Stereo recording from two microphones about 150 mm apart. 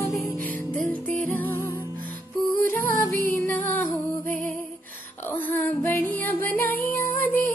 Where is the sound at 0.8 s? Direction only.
10° left (ahead or behind).